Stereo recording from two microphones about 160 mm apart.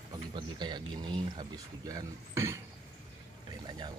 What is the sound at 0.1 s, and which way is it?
Speech, 30° right (ahead or behind).